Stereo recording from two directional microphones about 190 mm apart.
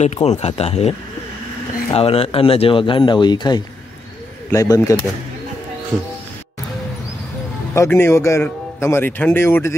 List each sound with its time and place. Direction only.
0.0 s speech: 35° left (ahead or behind); by 5.0 s 20° left (ahead or behind)
7.7 s speech: 15° left (ahead or behind)